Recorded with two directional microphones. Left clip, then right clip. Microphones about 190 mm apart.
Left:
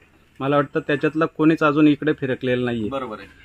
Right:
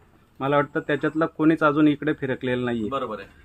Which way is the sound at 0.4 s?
55° left (ahead or behind).